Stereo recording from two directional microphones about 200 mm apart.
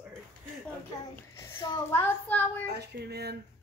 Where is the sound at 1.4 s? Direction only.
20° left (ahead or behind).